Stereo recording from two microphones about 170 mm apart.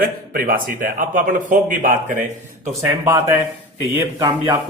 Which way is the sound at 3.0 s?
15° right (ahead or behind).